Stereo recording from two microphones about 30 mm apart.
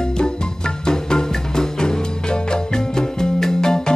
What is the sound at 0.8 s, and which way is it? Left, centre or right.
Music, left.